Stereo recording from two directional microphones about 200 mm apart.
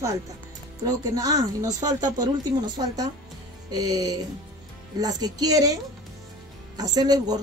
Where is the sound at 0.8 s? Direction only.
20° right (ahead or behind).